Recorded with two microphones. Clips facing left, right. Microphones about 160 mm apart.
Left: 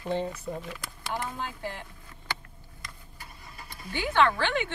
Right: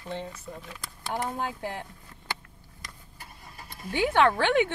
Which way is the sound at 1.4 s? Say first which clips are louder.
Right 3 dB; 55° right (ahead or behind).